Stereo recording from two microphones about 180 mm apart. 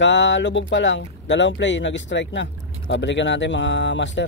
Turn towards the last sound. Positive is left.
turn(degrees=90)